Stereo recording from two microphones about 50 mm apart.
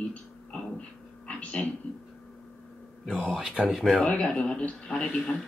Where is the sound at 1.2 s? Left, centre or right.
Left.